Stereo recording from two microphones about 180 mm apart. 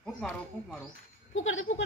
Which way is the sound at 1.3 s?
90° left.